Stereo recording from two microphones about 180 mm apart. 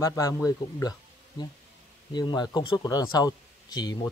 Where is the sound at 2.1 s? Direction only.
25° left (ahead or behind).